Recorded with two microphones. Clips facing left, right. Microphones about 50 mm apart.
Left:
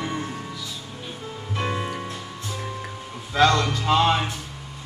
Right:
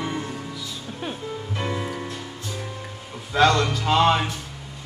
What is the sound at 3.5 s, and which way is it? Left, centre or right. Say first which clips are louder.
Music: even; centre.